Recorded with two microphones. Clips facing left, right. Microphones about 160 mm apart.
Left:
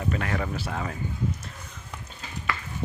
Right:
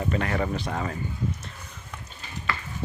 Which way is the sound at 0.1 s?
Centre (ahead or behind).